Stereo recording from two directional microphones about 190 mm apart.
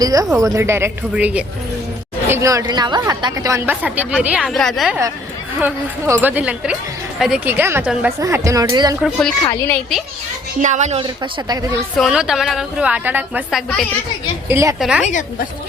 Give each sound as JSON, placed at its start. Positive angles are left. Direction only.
{"t": 0.0, "sound": "a woman's voice", "side_deg": -20}
{"t": 5.5, "sound": "a woman's voice", "side_deg": -10}
{"t": 9.0, "sound": "a woman's voice", "side_deg": 0}
{"t": 9.4, "sound": "a woman's voice", "side_deg": 15}
{"t": 10.6, "sound": "a woman's voice", "side_deg": -40}
{"t": 11.0, "sound": "speech", "side_deg": -20}
{"t": 11.9, "sound": "a woman's voice", "side_deg": 0}
{"t": 14.8, "sound": "a woman's voice", "side_deg": -5}